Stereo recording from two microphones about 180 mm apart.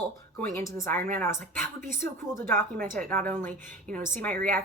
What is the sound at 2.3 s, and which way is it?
A woman's voice, 15° left (ahead or behind).